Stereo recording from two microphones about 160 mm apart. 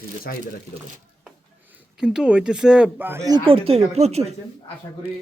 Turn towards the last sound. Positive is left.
turn(degrees=-40)  # may be behind; listen again after turning